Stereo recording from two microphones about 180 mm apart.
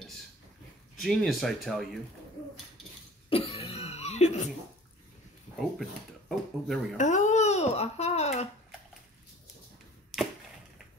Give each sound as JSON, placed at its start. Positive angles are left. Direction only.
{"t": 1.0, "sound": "speech", "side_deg": 0}
{"t": 3.3, "sound": "cough", "side_deg": 30}
{"t": 5.6, "sound": "speech", "side_deg": 0}
{"t": 7.0, "sound": "babbling", "side_deg": 40}